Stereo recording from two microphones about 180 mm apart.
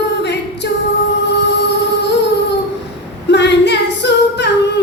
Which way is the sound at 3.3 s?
75° left (ahead or behind).